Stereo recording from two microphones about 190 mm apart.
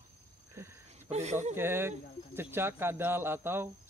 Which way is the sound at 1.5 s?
10° right (ahead or behind).